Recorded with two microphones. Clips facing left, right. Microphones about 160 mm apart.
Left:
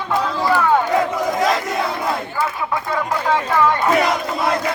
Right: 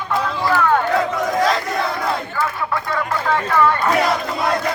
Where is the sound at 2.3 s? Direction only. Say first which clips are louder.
Even; 15° left (ahead or behind).